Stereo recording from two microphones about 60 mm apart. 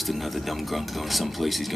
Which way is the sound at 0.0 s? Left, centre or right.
Centre.